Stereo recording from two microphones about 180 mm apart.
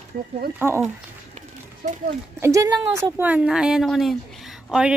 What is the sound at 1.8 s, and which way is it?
Speech, 55° right (ahead or behind).